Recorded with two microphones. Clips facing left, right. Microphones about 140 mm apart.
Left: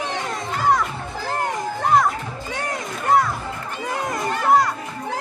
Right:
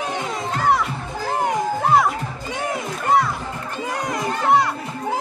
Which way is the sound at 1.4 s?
Centre (ahead or behind).